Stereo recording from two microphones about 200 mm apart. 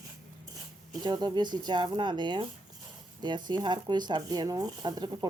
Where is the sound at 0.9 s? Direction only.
20° right (ahead or behind).